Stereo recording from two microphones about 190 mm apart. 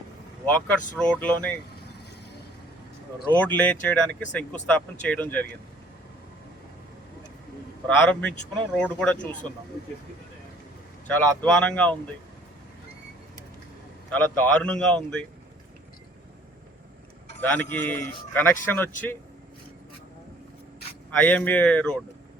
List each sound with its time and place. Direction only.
0.4 s speech: 10° left (ahead or behind)
3.3 s speech: 10° left (ahead or behind)
7.9 s speech: 5° left (ahead or behind)
11.0 s speech: 5° left (ahead or behind)
14.1 s speech: 10° left (ahead or behind)
17.4 s speech: 10° left (ahead or behind)
21.2 s speech: 5° left (ahead or behind)